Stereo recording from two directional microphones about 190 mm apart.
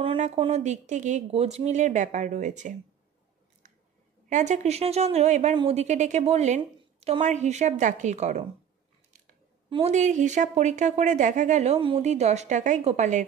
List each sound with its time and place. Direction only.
0.0 s speech: 30° right (ahead or behind)
3.6 s chewing: 40° right (ahead or behind)
4.3 s speech: 40° right (ahead or behind)
9.7 s speech: 35° right (ahead or behind)